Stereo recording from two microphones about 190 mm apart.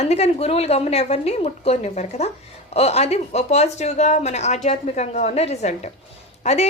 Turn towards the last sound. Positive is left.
turn(degrees=35)  # may be behind; listen again after turning